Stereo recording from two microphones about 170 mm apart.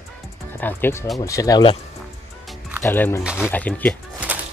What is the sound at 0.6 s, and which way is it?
Speech, 10° left (ahead or behind).